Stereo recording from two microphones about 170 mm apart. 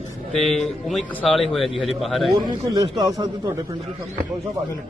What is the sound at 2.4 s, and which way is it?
Speech, 25° right (ahead or behind).